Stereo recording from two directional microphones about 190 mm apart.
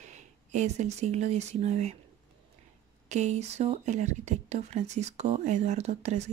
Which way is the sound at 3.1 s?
35° right (ahead or behind).